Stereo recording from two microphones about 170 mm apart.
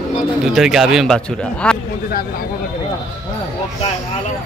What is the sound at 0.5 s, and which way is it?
Speech, centre (ahead or behind).